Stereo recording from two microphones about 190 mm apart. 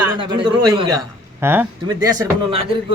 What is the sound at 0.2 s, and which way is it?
A man's voice, 20° right (ahead or behind).